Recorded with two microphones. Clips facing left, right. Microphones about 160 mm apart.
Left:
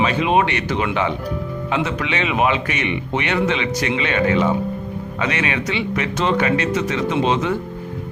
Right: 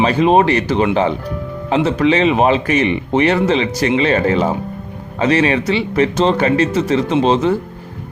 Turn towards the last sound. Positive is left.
turn(degrees=-30)  # may be behind; listen again after turning